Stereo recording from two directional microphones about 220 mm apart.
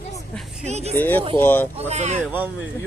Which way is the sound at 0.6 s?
30° right (ahead or behind).